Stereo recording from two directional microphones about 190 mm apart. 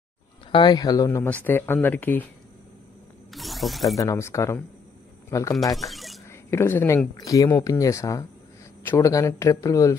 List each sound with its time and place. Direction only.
0.5 s speech: 25° left (ahead or behind)
3.3 s snake: centre (ahead or behind)
3.9 s speech: 15° left (ahead or behind)
5.8 s speech: centre (ahead or behind)
6.5 s speech: 10° left (ahead or behind)